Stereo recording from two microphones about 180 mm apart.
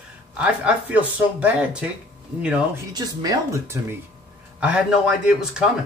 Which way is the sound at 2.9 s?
20° right (ahead or behind).